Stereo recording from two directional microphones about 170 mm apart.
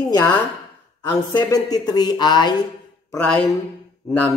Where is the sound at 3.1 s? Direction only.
5° left (ahead or behind).